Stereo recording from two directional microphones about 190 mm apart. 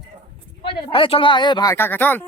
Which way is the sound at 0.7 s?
25° left (ahead or behind).